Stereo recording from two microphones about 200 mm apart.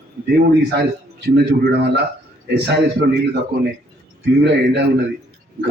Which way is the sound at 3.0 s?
55° right (ahead or behind).